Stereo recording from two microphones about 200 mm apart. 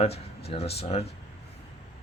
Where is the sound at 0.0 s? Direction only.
30° left (ahead or behind).